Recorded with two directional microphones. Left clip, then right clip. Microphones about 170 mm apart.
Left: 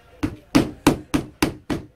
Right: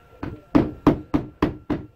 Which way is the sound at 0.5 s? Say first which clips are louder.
Even; 10° left (ahead or behind).